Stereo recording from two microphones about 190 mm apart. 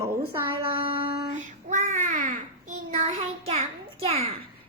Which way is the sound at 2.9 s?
40° right (ahead or behind).